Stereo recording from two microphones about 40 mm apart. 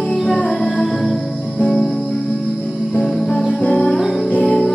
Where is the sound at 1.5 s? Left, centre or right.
Centre.